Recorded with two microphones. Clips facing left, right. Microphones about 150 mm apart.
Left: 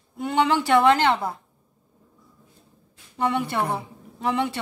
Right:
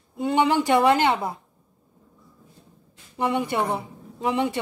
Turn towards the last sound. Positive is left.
turn(degrees=-15)  # may be behind; listen again after turning